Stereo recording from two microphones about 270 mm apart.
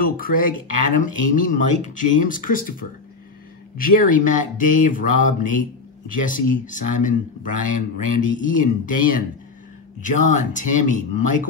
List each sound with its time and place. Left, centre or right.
0.0 s speech: left